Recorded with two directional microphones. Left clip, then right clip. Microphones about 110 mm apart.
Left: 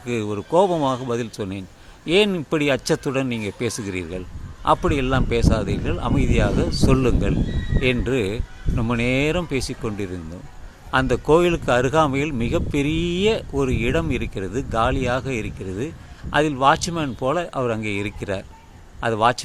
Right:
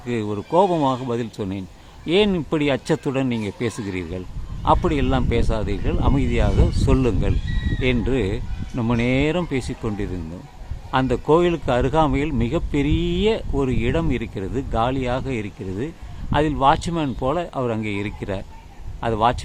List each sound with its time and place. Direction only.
0.0 s speech: 20° left (ahead or behind)